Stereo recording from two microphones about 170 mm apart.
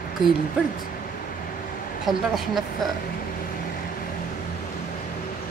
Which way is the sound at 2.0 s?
Centre (ahead or behind).